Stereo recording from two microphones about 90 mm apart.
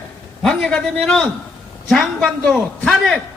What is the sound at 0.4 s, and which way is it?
A man's voice, 10° left (ahead or behind).